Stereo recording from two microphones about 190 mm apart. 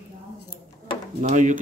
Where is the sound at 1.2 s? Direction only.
40° right (ahead or behind).